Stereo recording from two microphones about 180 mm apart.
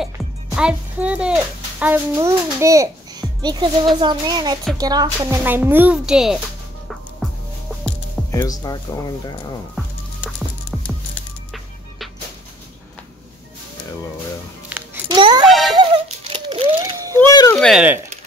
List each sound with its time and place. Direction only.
0.6 s a child's voice: 5° right (ahead or behind)
5.4 s speech: 10° right (ahead or behind)
8.3 s speech: 20° left (ahead or behind)
10.7 s music: 5° right (ahead or behind)
15.0 s music: 25° right (ahead or behind)
15.4 s a sound: centre (ahead or behind)
15.7 s a sound: 30° right (ahead or behind)
17.2 s a sound: 20° left (ahead or behind)
17.6 s speech: centre (ahead or behind)